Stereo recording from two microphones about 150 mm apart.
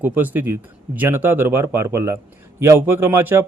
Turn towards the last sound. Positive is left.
turn(degrees=-15)  # may be behind; listen again after turning